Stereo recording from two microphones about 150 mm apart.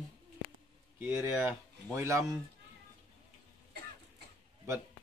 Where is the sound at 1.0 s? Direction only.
15° right (ahead or behind).